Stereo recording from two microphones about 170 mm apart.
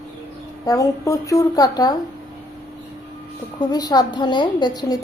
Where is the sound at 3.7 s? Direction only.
20° left (ahead or behind).